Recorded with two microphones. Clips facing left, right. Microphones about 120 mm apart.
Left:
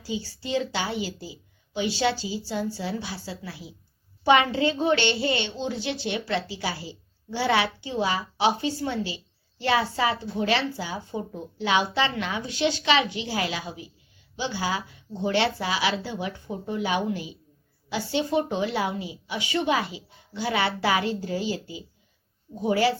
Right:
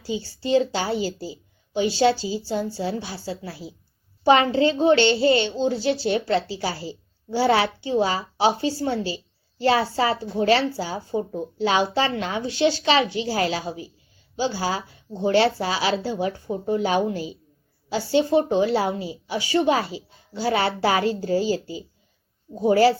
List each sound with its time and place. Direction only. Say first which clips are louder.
0.0 s a woman's voice: right 4 dB; 30° right (ahead or behind)